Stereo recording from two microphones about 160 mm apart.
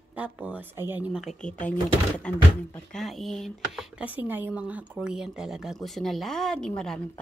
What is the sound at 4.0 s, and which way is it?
A woman's voice, 10° right (ahead or behind).